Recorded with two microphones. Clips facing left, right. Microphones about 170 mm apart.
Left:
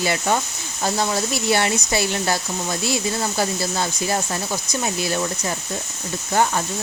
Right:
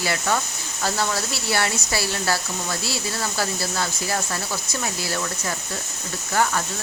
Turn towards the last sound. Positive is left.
turn(degrees=25)  # may be behind; listen again after turning